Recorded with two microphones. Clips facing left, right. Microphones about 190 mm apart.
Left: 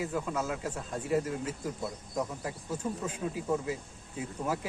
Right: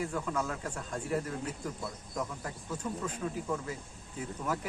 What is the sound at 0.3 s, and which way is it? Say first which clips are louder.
Speech: left 1 dB; 15° left (ahead or behind).